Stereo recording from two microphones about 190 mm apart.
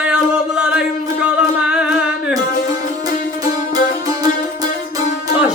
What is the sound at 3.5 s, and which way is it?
Music, 20° right (ahead or behind).